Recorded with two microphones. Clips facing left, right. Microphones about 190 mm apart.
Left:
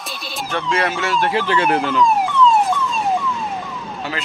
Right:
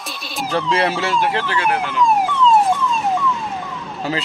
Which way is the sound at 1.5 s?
30° left (ahead or behind).